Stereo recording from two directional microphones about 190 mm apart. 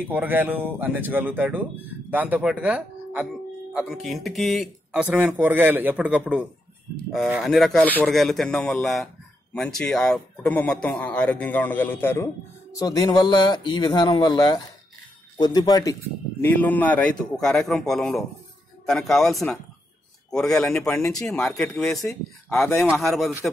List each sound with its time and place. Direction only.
0.1 s speech: 10° right (ahead or behind)